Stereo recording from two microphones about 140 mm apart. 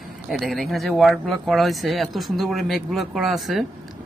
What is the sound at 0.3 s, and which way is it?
Speech, centre (ahead or behind).